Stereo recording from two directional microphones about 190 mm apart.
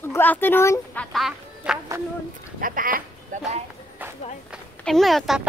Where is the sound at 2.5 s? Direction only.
45° right (ahead or behind).